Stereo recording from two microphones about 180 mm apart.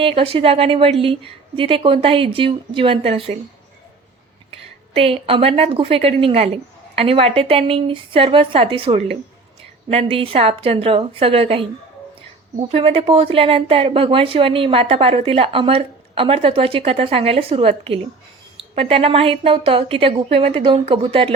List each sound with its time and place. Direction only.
0.0 s speech: 30° right (ahead or behind)
4.9 s speech: 30° right (ahead or behind)